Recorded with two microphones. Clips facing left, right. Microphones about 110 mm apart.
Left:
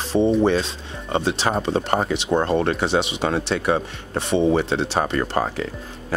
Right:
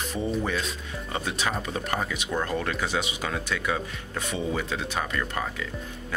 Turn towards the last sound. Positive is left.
turn(degrees=40)  # may be behind; listen again after turning